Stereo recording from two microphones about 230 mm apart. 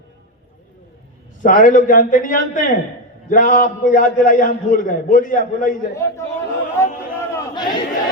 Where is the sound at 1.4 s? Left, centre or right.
Left.